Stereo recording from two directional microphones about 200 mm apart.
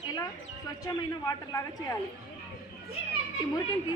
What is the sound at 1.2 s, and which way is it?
Speech, 15° left (ahead or behind).